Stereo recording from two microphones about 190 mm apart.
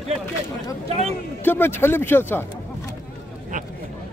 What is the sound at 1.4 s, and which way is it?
A man's voice, 10° left (ahead or behind).